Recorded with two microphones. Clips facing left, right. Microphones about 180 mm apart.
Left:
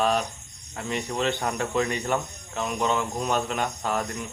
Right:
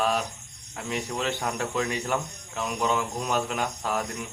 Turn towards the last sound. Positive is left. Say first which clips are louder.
# left 1 dB
turn(degrees=-5)  # may be behind; listen again after turning